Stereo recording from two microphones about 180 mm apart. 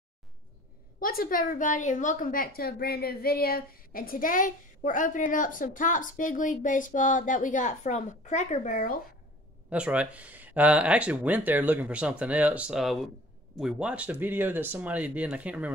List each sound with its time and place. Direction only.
0.9 s a woman's voice: 55° left (ahead or behind)
9.7 s speech: 5° right (ahead or behind)